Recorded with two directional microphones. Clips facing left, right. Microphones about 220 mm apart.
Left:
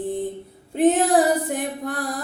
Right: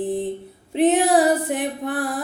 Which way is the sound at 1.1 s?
Centre (ahead or behind).